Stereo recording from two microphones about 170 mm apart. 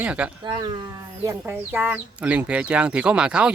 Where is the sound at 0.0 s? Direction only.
5° right (ahead or behind).